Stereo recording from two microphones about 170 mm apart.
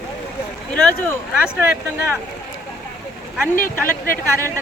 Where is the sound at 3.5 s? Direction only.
55° left (ahead or behind).